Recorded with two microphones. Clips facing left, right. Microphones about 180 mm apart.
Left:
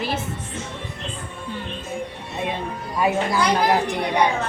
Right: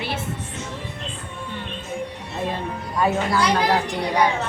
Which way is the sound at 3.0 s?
15° left (ahead or behind).